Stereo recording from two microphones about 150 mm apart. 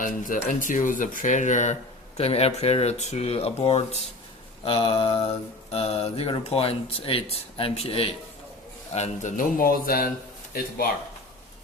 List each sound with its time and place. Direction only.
0.0 s speech: 60° left (ahead or behind)
2.1 s speech: 45° left (ahead or behind)
8.9 s speech: 50° left (ahead or behind); by 10.1 s 75° left (ahead or behind)